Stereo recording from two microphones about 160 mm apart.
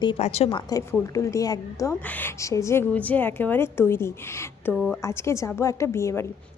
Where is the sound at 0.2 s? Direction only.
40° left (ahead or behind).